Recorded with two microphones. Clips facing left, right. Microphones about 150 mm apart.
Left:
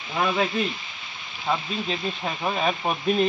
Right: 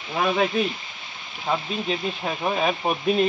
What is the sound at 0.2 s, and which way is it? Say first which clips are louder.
Speech: right 2 dB; 15° right (ahead or behind).